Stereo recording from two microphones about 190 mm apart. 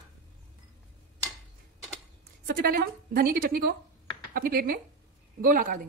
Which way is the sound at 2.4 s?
50° right (ahead or behind).